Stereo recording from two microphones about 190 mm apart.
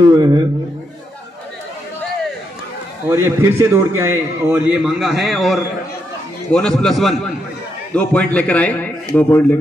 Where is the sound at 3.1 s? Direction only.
15° right (ahead or behind).